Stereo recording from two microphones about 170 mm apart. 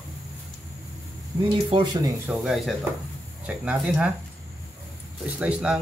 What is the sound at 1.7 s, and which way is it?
Speech, 25° right (ahead or behind).